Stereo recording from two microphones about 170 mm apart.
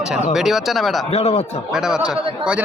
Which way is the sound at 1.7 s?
5° right (ahead or behind).